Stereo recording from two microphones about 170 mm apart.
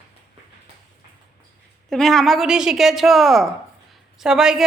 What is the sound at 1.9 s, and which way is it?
A woman's voice, centre (ahead or behind).